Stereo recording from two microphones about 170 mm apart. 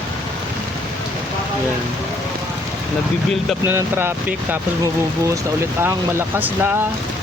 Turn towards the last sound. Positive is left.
turn(degrees=-15)  # may be behind; listen again after turning